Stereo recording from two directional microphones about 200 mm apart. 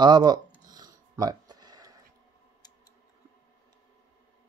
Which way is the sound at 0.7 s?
20° right (ahead or behind).